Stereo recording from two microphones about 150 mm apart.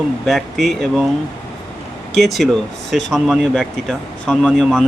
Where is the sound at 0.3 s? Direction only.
Centre (ahead or behind).